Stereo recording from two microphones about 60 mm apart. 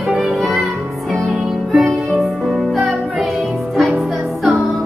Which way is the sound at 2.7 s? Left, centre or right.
Centre.